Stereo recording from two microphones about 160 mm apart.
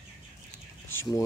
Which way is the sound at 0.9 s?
15° left (ahead or behind).